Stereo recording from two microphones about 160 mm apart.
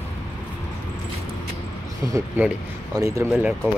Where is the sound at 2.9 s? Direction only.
20° right (ahead or behind).